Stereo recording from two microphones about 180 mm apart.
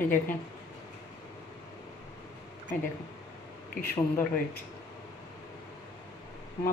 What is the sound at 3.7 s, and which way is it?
Speech, 55° left (ahead or behind).